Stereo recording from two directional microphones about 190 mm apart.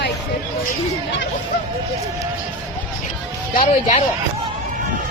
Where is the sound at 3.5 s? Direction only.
45° left (ahead or behind).